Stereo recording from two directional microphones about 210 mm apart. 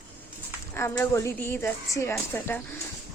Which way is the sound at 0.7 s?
10° left (ahead or behind).